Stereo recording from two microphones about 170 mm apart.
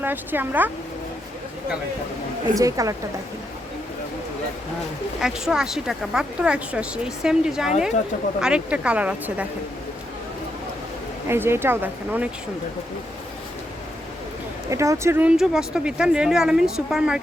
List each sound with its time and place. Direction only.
0.0 s speech: 10° right (ahead or behind)
2.6 s a woman's voice: 20° right (ahead or behind)
5.2 s speech: 5° right (ahead or behind)
11.3 s speech: 15° right (ahead or behind)
14.7 s speech: 20° right (ahead or behind); by 17.2 s 5° right (ahead or behind)